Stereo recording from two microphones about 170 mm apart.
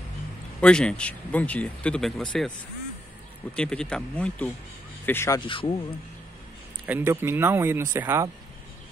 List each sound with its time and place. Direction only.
0.6 s speech: 5° left (ahead or behind)
3.5 s speech: 5° left (ahead or behind)
5.5 s speech: 30° left (ahead or behind)
6.9 s speech: 10° right (ahead or behind)